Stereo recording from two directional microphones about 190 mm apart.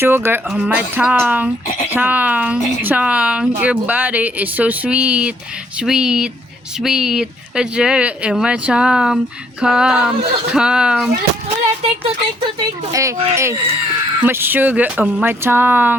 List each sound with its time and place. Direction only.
0.0 s speech: 10° right (ahead or behind)
11.4 s speech: 30° right (ahead or behind)
12.5 s speech: 15° right (ahead or behind)